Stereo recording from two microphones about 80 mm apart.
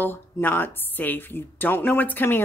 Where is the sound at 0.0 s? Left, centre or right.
Left.